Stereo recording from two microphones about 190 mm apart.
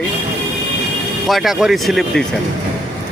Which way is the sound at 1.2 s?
Centre (ahead or behind).